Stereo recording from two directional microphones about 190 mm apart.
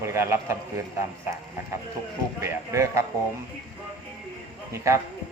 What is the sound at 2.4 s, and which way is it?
Speech, 15° right (ahead or behind).